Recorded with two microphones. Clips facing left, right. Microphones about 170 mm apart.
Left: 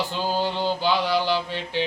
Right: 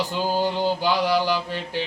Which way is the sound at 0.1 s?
15° right (ahead or behind).